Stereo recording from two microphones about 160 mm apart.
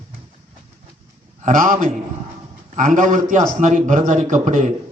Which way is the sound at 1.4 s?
55° right (ahead or behind).